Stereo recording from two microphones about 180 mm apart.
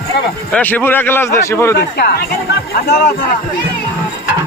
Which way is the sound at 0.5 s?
10° left (ahead or behind).